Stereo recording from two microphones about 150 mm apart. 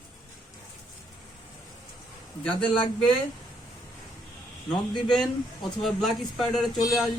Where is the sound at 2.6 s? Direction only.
35° left (ahead or behind).